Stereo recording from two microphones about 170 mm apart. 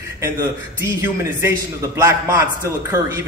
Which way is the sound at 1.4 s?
15° right (ahead or behind).